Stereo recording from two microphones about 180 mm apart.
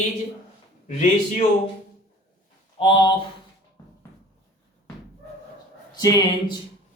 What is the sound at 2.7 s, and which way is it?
Speech, 30° left (ahead or behind).